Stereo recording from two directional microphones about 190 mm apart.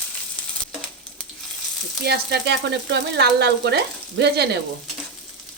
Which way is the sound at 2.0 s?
60° right (ahead or behind).